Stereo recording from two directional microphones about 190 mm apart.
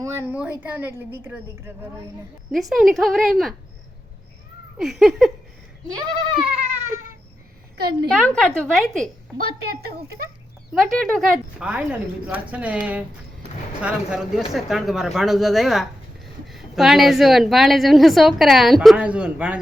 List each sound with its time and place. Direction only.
0.0 s speech: 10° right (ahead or behind)
2.5 s speech: centre (ahead or behind)
4.8 s speech: centre (ahead or behind)
6.0 s speech: 25° right (ahead or behind)
8.1 s speech: 5° left (ahead or behind)
10.8 s speech: centre (ahead or behind)